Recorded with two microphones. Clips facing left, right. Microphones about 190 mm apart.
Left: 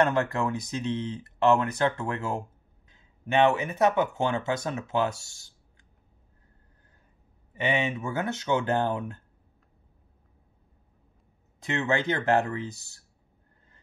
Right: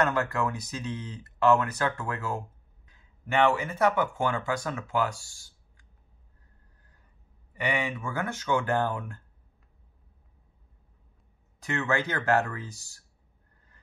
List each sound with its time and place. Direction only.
0.0 s speech: 25° left (ahead or behind)
7.5 s speech: 20° left (ahead or behind)
11.6 s speech: 20° left (ahead or behind)